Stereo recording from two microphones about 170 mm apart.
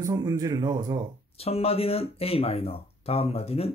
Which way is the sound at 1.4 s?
35° left (ahead or behind).